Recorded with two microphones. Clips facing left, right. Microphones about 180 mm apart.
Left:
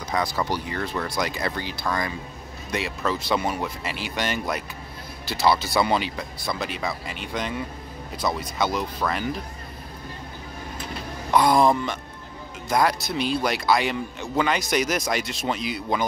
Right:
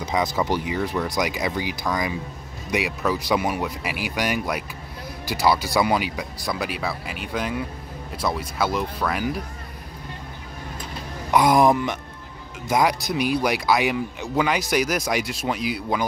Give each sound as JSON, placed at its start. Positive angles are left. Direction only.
{"t": 0.0, "sound": "speech", "side_deg": -20}
{"t": 11.3, "sound": "speech", "side_deg": -15}